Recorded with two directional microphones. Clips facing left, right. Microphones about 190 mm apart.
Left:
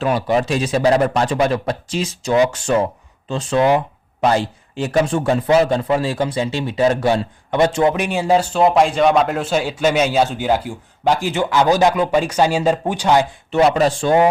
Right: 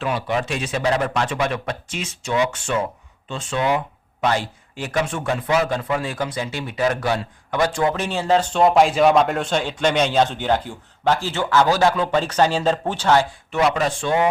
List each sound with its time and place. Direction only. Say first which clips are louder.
0.0 s speech: left 6 dB; 40° left (ahead or behind); by 13.2 s 15° left (ahead or behind)
13.5 s speech: left 6 dB; 30° left (ahead or behind)